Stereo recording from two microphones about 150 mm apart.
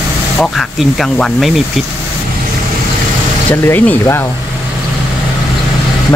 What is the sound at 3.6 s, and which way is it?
Speech, 10° left (ahead or behind).